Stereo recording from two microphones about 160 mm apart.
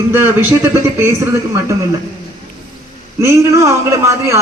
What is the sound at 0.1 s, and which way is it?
A man's voice, 15° right (ahead or behind).